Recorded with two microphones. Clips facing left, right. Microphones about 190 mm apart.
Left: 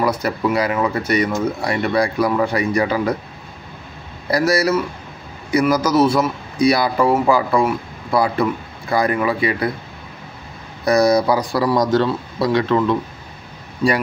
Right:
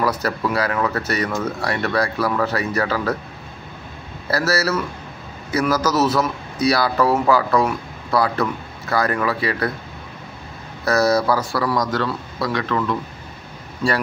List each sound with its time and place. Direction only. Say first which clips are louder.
0.0 s a man's voice: left 2 dB; 10° left (ahead or behind)
4.3 s a man's voice: left 4 dB; 15° left (ahead or behind)
10.9 s a man's voice: left 3 dB; 15° left (ahead or behind)